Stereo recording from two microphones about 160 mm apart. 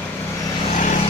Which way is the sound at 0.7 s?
50° left (ahead or behind).